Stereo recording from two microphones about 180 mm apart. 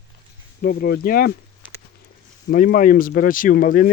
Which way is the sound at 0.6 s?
55° left (ahead or behind).